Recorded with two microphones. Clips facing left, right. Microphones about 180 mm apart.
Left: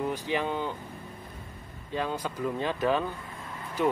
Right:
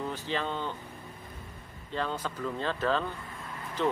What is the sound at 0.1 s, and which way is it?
Speech, 15° left (ahead or behind).